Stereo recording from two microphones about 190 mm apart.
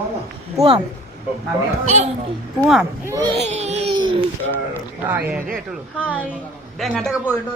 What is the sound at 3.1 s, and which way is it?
Speech, 20° right (ahead or behind).